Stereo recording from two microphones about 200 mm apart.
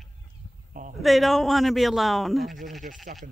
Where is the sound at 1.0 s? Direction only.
Centre (ahead or behind).